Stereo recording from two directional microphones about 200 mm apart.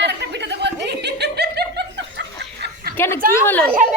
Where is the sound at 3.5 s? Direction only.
5° left (ahead or behind).